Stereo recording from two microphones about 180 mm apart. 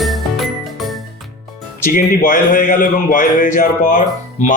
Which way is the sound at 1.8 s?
50° left (ahead or behind).